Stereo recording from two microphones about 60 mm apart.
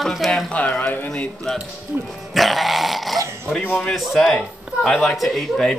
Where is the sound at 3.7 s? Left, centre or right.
Centre.